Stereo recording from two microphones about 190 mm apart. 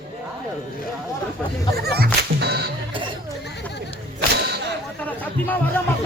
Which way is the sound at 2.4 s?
60° right (ahead or behind).